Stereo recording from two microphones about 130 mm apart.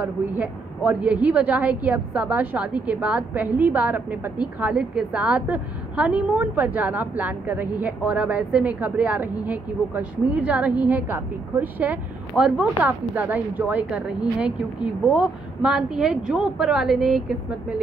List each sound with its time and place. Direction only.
0.0 s a woman's voice: 10° right (ahead or behind)